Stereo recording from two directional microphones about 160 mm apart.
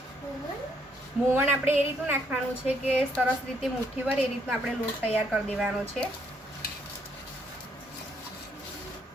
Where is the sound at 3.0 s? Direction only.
Centre (ahead or behind).